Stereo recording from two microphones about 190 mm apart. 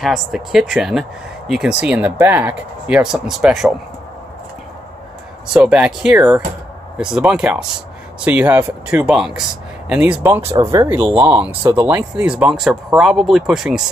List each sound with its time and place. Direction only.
0.0 s speech: centre (ahead or behind)
5.5 s speech: 5° right (ahead or behind)
10.6 s speech: 20° right (ahead or behind)
11.1 s speech: 5° right (ahead or behind)